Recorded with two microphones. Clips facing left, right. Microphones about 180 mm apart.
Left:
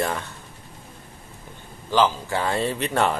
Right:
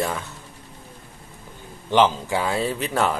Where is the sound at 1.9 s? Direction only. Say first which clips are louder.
Right 2 dB; 20° right (ahead or behind).